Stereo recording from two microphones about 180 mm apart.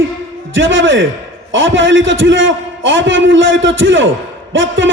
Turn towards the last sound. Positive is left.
turn(degrees=-90)